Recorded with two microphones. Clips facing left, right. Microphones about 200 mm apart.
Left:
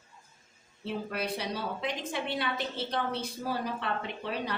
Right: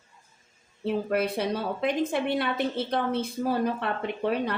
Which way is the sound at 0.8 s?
55° right (ahead or behind).